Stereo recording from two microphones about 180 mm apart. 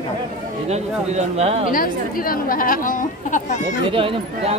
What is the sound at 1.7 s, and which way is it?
Speech, 50° left (ahead or behind).